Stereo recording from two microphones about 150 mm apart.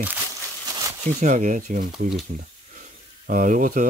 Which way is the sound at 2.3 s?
60° right (ahead or behind).